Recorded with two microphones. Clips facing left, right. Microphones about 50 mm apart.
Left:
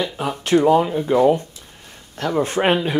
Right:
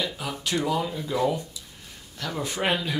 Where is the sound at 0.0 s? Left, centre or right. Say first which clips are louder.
Left 6 dB; left.